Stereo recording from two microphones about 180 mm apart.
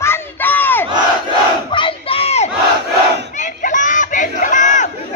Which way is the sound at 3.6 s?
45° left (ahead or behind).